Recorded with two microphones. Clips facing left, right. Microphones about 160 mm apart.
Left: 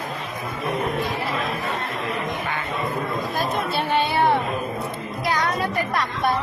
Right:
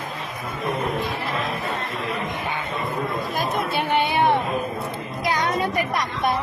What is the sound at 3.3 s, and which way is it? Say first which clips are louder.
Speech: even; 15° right (ahead or behind).